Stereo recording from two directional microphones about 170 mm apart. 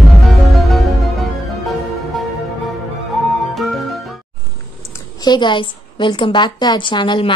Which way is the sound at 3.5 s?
Centre (ahead or behind).